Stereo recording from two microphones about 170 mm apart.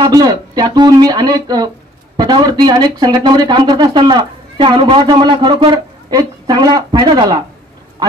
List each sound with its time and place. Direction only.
0.0 s speech: 20° right (ahead or behind)